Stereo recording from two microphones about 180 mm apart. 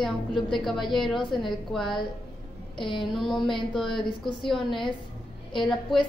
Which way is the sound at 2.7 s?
25° left (ahead or behind).